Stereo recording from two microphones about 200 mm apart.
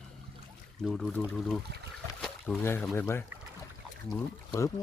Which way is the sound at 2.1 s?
5° left (ahead or behind).